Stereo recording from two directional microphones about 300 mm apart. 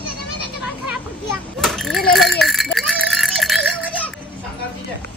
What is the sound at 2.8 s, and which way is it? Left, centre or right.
Music, centre.